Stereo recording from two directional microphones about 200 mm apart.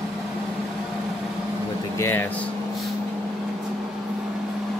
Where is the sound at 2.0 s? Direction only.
10° left (ahead or behind).